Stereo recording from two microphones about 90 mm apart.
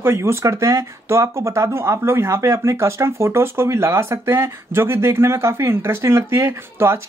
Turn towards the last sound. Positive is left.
turn(degrees=-30)  # may be behind; listen again after turning